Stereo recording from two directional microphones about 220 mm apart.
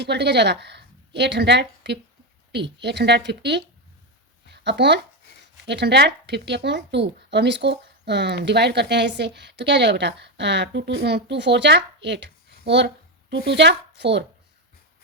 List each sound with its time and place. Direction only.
0.0 s a woman's voice: 50° right (ahead or behind)